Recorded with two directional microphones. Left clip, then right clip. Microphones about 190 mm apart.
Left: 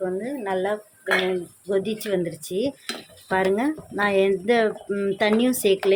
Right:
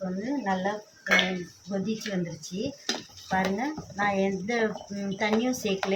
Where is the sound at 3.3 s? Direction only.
60° left (ahead or behind).